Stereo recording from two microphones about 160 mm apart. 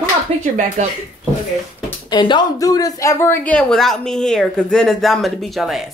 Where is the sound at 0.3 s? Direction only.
45° right (ahead or behind).